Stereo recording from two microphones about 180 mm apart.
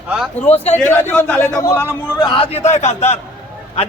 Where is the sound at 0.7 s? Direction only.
10° left (ahead or behind).